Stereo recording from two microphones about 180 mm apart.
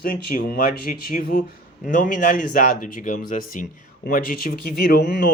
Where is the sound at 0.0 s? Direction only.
50° left (ahead or behind).